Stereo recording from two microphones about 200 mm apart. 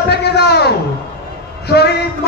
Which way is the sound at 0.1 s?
55° left (ahead or behind).